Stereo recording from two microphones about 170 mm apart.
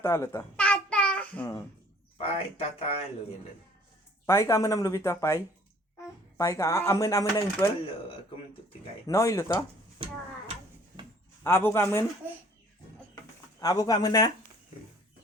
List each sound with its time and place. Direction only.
0.0 s babbling: 15° left (ahead or behind)
2.1 s a man's voice: 35° left (ahead or behind)
4.3 s speech: 15° left (ahead or behind)
9.0 s speech: 20° left (ahead or behind)
10.0 s a sound: 30° right (ahead or behind)
11.4 s speech: 15° left (ahead or behind)
13.6 s speech: 20° left (ahead or behind)